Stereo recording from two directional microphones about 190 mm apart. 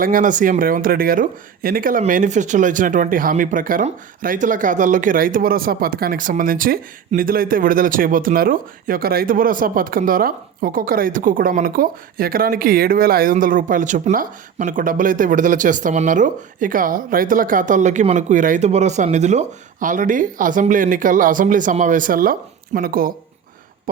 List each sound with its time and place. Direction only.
0.0 s speech: 45° right (ahead or behind)